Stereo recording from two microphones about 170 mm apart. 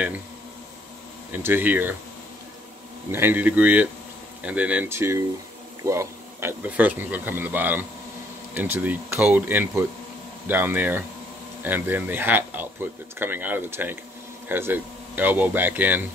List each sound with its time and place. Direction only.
1.3 s speech: 10° right (ahead or behind)
3.1 s speech: 10° right (ahead or behind)